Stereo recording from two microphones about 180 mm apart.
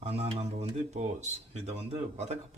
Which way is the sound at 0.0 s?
35° right (ahead or behind).